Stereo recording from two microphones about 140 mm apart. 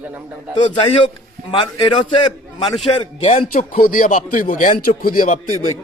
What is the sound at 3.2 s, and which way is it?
Speech, 55° left (ahead or behind).